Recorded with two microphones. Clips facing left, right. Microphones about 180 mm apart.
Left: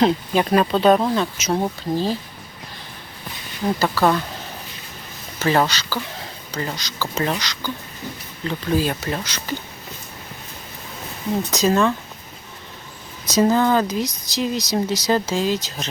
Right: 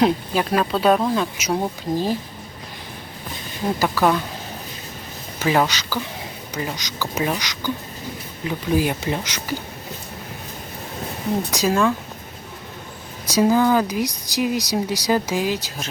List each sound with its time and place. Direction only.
0.0 s speech: 5° right (ahead or behind)
3.8 s speech: 10° right (ahead or behind)
5.4 s speech: 10° right (ahead or behind)
11.5 s speech: 10° right (ahead or behind)
13.2 s speech: 10° right (ahead or behind)